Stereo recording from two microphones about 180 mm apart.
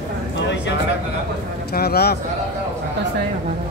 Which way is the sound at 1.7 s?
60° left (ahead or behind).